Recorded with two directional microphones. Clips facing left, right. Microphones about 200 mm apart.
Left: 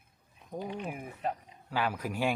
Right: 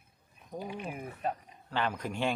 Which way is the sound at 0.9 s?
5° left (ahead or behind).